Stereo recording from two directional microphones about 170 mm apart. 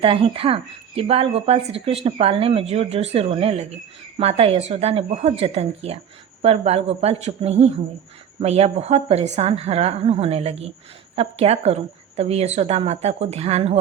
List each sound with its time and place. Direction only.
0.0 s a woman's voice: 35° right (ahead or behind)